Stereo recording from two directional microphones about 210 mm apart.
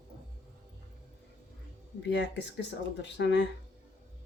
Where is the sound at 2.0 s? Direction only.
55° left (ahead or behind).